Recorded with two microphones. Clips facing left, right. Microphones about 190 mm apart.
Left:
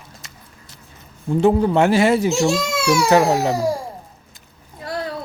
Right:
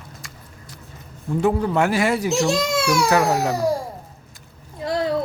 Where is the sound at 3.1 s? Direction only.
20° left (ahead or behind).